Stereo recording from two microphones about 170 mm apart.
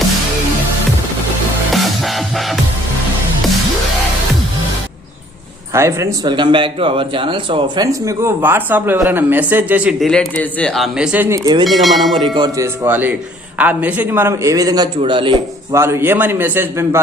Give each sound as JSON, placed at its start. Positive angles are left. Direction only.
{"t": 1.7, "sound": "music", "side_deg": 0}
{"t": 5.7, "sound": "speech", "side_deg": -15}
{"t": 7.9, "sound": "speech", "side_deg": -15}
{"t": 10.1, "sound": "a man's voice", "side_deg": 5}
{"t": 12.2, "sound": "speech", "side_deg": -25}
{"t": 12.6, "sound": "speech", "side_deg": -10}
{"t": 15.7, "sound": "speech", "side_deg": -15}